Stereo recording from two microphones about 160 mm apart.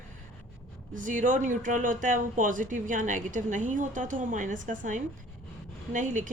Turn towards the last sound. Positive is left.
turn(degrees=-50)  # may be behind; listen again after turning